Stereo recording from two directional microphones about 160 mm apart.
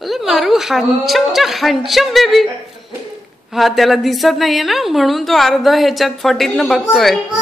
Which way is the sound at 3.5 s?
Centre (ahead or behind).